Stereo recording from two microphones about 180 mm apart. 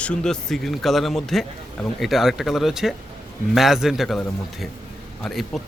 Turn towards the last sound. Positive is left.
turn(degrees=0)  # may be behind; listen again after turning